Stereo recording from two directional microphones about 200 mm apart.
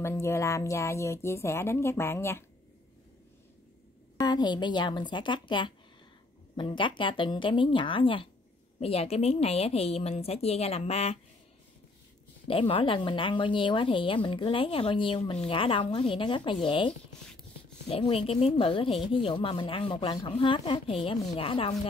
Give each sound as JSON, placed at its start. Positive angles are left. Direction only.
{"t": 0.0, "sound": "speech", "side_deg": 15}
{"t": 4.2, "sound": "a woman's voice", "side_deg": 20}
{"t": 12.4, "sound": "speech", "side_deg": 25}